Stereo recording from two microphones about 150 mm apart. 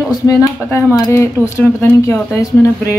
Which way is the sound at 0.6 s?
15° left (ahead or behind).